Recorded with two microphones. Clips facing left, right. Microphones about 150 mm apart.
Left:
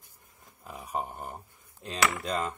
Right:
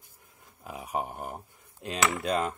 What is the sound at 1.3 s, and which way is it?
Cutlery, 10° right (ahead or behind).